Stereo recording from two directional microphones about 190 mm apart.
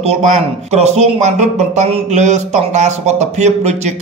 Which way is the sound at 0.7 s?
35° right (ahead or behind).